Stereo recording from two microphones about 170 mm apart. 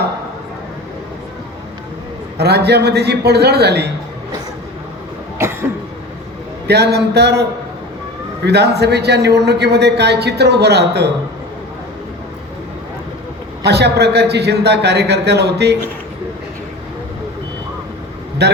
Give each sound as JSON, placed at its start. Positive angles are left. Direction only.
{"t": 2.4, "sound": "a man's voice", "side_deg": -75}
{"t": 5.4, "sound": "cough", "side_deg": -15}
{"t": 6.7, "sound": "a man's voice", "side_deg": -75}
{"t": 8.4, "sound": "a man's voice", "side_deg": -75}
{"t": 13.7, "sound": "a man's voice", "side_deg": -75}
{"t": 18.4, "sound": "a man's voice", "side_deg": -75}